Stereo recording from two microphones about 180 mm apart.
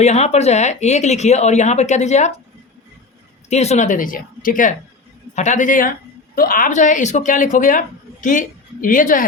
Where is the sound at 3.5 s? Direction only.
40° left (ahead or behind).